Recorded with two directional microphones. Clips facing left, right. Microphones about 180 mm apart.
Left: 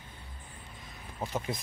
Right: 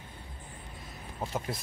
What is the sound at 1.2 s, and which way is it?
Speech, 5° right (ahead or behind).